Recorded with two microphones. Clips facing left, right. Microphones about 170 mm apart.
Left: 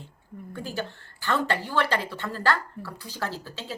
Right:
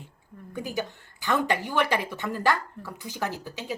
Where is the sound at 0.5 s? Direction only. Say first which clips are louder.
Right 2 dB; 15° right (ahead or behind).